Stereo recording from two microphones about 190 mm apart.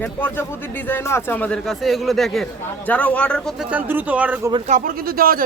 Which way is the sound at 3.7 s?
10° right (ahead or behind).